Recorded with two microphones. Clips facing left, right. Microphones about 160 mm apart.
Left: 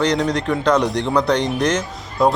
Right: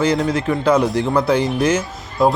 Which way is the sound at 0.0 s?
5° right (ahead or behind).